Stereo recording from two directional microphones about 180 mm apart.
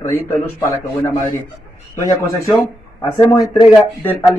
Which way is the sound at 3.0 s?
15° left (ahead or behind).